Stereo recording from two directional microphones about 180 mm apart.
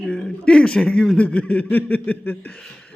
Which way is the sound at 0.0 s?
5° left (ahead or behind).